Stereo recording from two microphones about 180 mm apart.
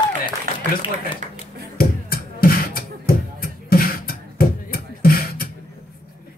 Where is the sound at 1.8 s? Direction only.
55° left (ahead or behind).